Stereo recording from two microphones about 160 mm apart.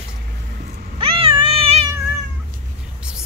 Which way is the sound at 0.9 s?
35° right (ahead or behind).